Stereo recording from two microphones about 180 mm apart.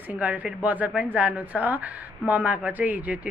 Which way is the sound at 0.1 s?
10° right (ahead or behind).